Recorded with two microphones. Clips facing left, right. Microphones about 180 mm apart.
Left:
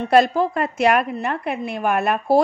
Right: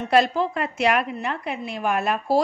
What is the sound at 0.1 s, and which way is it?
A woman's voice, 45° left (ahead or behind).